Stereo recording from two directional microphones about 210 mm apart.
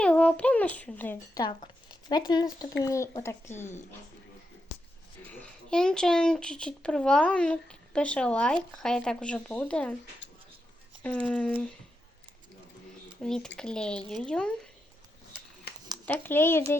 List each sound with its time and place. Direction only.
0.0 s a child's voice: 5° left (ahead or behind)
5.3 s a child's voice: 5° left (ahead or behind)
11.0 s a child's voice: 5° left (ahead or behind)
13.2 s a child's voice: 5° left (ahead or behind)
16.0 s speech: 10° left (ahead or behind)